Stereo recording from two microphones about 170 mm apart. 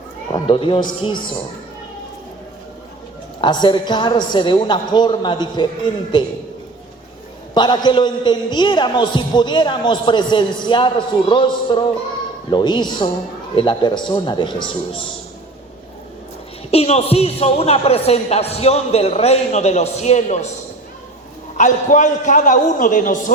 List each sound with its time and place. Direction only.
0.3 s a man's voice: 30° left (ahead or behind)
3.4 s a man's voice: 25° left (ahead or behind)
7.5 s a man's voice: 25° left (ahead or behind)
16.7 s speech: 35° left (ahead or behind)
21.6 s a man's voice: 45° left (ahead or behind)